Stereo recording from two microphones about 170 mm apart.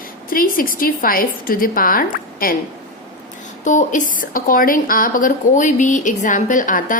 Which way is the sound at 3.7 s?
50° left (ahead or behind).